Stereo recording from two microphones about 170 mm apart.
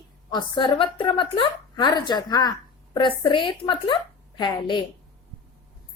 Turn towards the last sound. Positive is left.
turn(degrees=25)  # may be behind; listen again after turning